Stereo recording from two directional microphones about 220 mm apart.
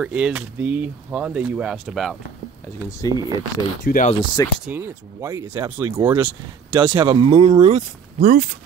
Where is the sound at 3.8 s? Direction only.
40° left (ahead or behind).